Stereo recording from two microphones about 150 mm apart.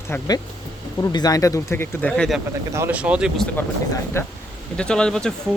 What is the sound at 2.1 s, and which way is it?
Speech, 5° left (ahead or behind).